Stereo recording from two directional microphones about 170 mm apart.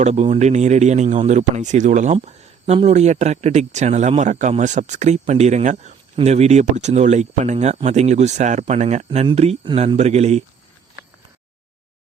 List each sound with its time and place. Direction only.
0.0 s speech: 40° right (ahead or behind)
2.1 s speech: 35° right (ahead or behind)